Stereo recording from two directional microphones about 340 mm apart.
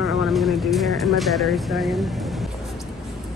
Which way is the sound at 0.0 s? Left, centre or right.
Centre.